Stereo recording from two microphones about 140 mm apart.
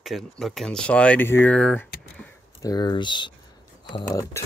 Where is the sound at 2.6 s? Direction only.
30° left (ahead or behind).